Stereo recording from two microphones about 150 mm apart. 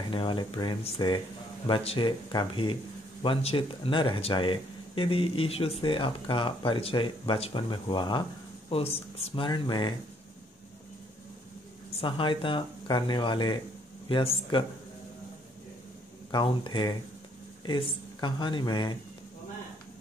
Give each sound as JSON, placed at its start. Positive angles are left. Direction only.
{"t": 0.1, "sound": "speech", "side_deg": 35}
{"t": 12.0, "sound": "speech", "side_deg": 35}
{"t": 16.3, "sound": "speech", "side_deg": 30}